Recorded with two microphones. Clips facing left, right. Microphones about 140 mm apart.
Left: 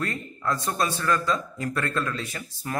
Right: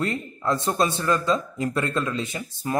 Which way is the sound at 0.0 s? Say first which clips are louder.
Right 3 dB; 25° right (ahead or behind).